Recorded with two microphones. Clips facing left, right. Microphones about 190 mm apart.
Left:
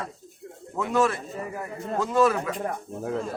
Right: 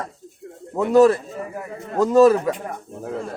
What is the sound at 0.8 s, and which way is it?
Speech, 40° right (ahead or behind).